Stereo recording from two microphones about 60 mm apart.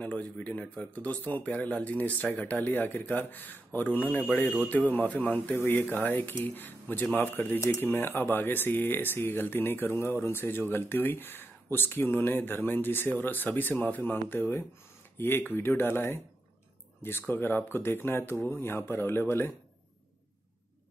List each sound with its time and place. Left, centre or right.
0.0 s speech: left
17.3 s speech: left